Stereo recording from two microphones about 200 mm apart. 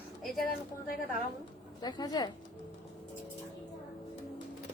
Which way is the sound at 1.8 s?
20° left (ahead or behind).